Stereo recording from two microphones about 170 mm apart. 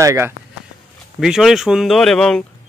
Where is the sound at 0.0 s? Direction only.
15° right (ahead or behind).